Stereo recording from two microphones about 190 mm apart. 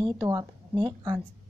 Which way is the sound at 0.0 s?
20° right (ahead or behind).